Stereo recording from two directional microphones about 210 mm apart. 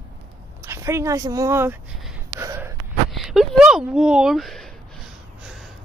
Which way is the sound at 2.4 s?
15° right (ahead or behind).